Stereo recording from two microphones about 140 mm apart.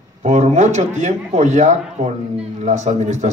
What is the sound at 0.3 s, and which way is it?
A man's voice, 55° right (ahead or behind).